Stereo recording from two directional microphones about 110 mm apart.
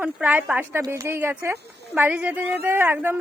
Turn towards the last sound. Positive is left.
turn(degrees=-25)  # may be behind; listen again after turning